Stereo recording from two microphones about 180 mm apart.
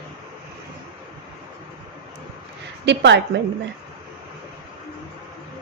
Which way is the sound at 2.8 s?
75° right (ahead or behind).